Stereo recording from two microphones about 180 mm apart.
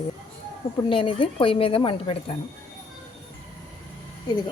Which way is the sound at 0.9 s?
30° left (ahead or behind).